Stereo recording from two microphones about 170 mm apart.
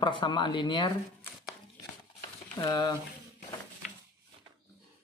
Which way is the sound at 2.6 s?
25° left (ahead or behind).